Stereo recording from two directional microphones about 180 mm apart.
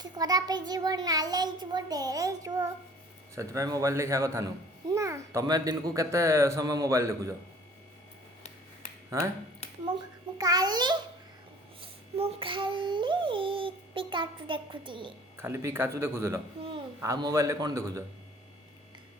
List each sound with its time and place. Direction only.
0.0 s a child's voice: 20° right (ahead or behind)
10.3 s a child's voice: 20° right (ahead or behind)
11.8 s a sound: 30° right (ahead or behind)
15.4 s speech: 15° right (ahead or behind)